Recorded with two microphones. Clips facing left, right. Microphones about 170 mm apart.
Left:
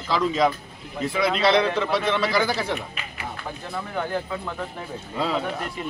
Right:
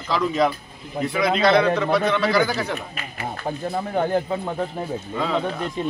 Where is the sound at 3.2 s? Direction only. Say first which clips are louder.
Right 8 dB; 40° right (ahead or behind).